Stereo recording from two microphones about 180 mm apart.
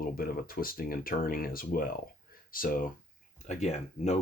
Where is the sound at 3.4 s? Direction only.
40° left (ahead or behind).